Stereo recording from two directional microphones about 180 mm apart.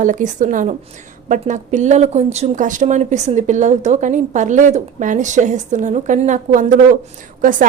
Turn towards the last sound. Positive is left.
turn(degrees=-50)  # may be behind; listen again after turning